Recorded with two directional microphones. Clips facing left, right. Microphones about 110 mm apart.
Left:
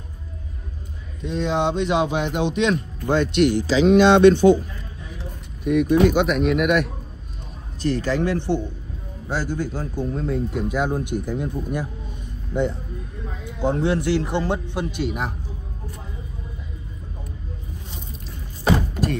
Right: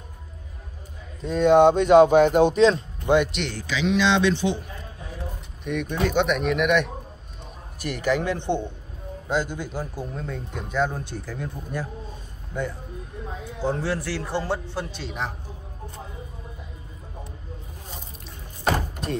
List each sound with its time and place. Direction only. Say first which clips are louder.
1.2 s speech: right 7 dB; 45° right (ahead or behind)
3.0 s speech: right 1 dB; 15° right (ahead or behind)
3.6 s speech: left 8 dB; 35° left (ahead or behind)
3.9 s speech: left 8 dB; 50° left (ahead or behind)
5.6 s speech: left 9 dB; 5° left (ahead or behind)
7.8 s a man's voice: left 3 dB; 15° right (ahead or behind)
10.1 s a man's voice: left 8 dB; centre (ahead or behind)